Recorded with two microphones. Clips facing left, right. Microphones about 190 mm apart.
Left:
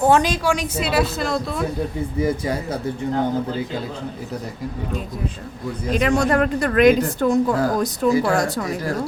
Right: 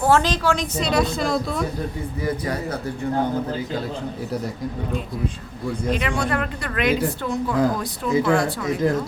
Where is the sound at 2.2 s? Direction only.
25° left (ahead or behind).